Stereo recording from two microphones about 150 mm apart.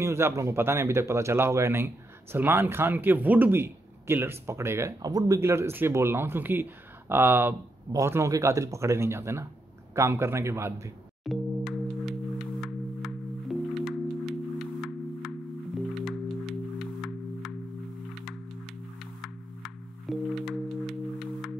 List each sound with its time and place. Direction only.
0.0 s a man's voice: 20° right (ahead or behind)
11.2 s singing bowl: centre (ahead or behind)
14.8 s music: centre (ahead or behind)
19.2 s music: centre (ahead or behind)